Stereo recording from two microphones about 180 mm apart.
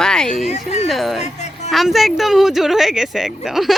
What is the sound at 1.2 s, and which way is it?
Music, 40° left (ahead or behind).